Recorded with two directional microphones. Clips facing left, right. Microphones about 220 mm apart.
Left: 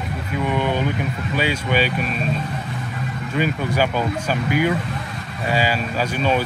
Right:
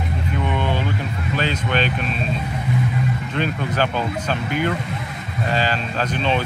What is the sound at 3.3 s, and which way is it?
Speech, 10° left (ahead or behind).